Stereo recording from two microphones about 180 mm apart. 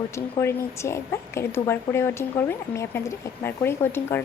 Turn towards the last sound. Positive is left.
turn(degrees=10)  # may be behind; listen again after turning